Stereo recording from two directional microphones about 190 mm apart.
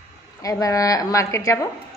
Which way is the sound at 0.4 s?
20° left (ahead or behind).